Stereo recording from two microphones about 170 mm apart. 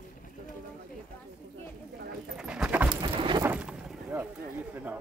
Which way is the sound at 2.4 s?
5° right (ahead or behind).